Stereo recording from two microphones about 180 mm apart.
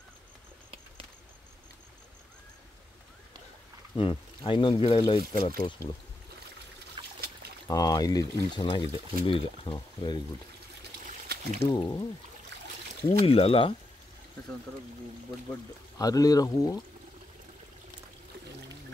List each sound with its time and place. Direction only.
3.9 s speech: 25° left (ahead or behind)
5.2 s speech: 55° right (ahead or behind)
7.0 s trickle: 25° right (ahead or behind)
7.6 s speech: 20° left (ahead or behind)
11.2 s a sound: 65° right (ahead or behind)
11.7 s speech: 25° left (ahead or behind)
13.2 s speech: 30° left (ahead or behind)
16.0 s speech: 20° left (ahead or behind)